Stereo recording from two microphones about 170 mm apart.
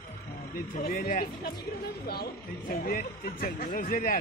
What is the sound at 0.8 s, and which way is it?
Speech, 60° left (ahead or behind).